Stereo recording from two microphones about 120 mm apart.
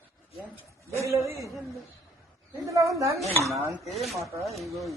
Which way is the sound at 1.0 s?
25° right (ahead or behind).